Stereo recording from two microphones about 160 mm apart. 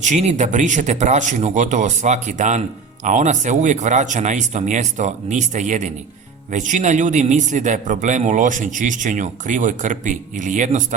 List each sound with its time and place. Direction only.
0.0 s speech: 45° right (ahead or behind)